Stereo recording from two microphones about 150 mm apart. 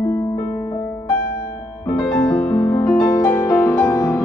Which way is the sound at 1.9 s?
10° left (ahead or behind).